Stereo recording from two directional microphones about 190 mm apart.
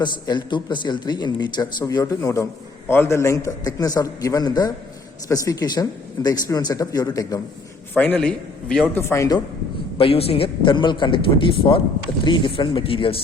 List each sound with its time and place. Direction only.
0.0 s a man's voice: 25° left (ahead or behind)
10.0 s speech: 30° left (ahead or behind)